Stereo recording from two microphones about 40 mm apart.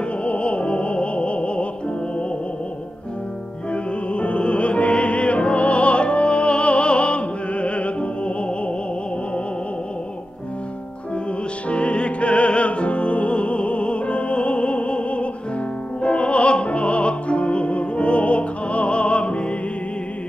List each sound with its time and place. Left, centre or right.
0.2 s music: left
3.7 s music: left
11.7 s music: left